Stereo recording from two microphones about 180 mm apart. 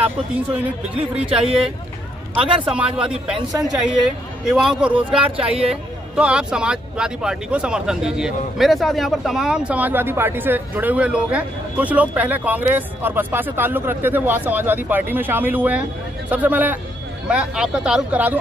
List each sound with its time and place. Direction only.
0.8 s speech: 5° right (ahead or behind)
2.3 s speech: 30° right (ahead or behind)
4.5 s speech: centre (ahead or behind)
4.9 s speech: 30° right (ahead or behind)
5.7 s speech: 5° right (ahead or behind)